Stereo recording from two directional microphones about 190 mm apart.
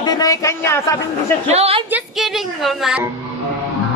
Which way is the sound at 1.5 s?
30° right (ahead or behind).